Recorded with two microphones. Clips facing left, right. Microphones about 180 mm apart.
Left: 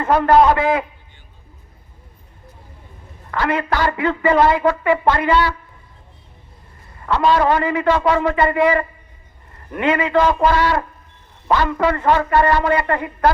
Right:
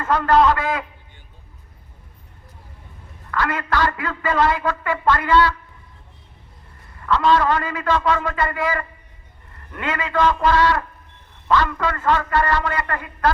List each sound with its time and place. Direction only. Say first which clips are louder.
0.0 s a woman's voice: left 3 dB; 25° left (ahead or behind)
3.3 s a woman's voice: left 3 dB; 25° left (ahead or behind)
7.3 s a woman's voice: left 4 dB; 25° left (ahead or behind)